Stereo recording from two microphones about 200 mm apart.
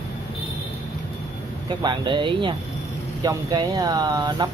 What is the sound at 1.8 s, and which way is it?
Speech, 25° right (ahead or behind).